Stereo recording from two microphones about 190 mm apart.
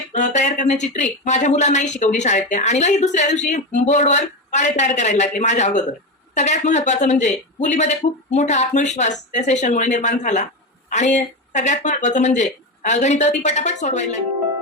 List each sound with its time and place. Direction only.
0.1 s speech: 40° left (ahead or behind)